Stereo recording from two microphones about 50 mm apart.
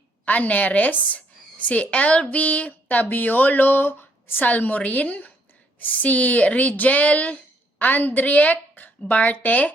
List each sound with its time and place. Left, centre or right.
0.3 s speech: left
7.8 s speech: left